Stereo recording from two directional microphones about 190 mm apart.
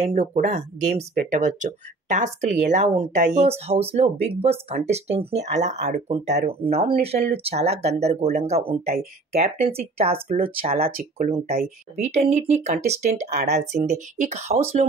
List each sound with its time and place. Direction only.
0.1 s speech: 40° right (ahead or behind)